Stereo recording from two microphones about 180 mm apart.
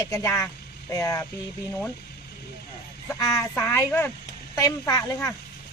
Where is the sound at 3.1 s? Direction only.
15° left (ahead or behind).